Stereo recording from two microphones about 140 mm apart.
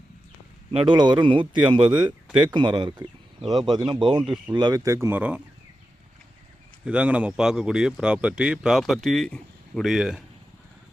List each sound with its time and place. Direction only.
0.7 s speech: 40° right (ahead or behind)
4.2 s speech: 5° right (ahead or behind)
4.5 s speech: 30° right (ahead or behind); by 5.4 s 10° right (ahead or behind)
6.8 s speech: 10° right (ahead or behind)